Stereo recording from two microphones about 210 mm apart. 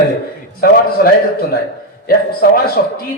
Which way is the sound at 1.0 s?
45° left (ahead or behind).